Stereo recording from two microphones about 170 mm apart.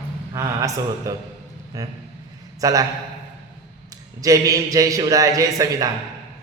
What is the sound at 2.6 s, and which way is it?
Speech, 20° right (ahead or behind).